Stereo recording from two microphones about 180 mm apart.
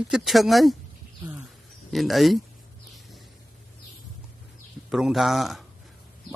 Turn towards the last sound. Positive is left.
turn(degrees=0)  # may be behind; listen again after turning